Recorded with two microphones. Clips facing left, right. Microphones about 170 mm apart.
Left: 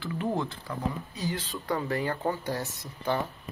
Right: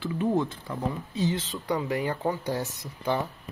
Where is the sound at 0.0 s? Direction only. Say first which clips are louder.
Right 4 dB; 20° right (ahead or behind).